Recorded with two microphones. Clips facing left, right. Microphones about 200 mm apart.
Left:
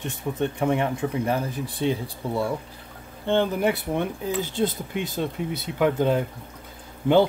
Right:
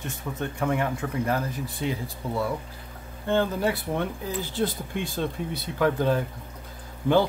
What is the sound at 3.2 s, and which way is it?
Speech, 20° left (ahead or behind).